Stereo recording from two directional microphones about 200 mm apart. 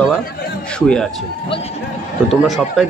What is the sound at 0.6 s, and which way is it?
Speech, 5° left (ahead or behind).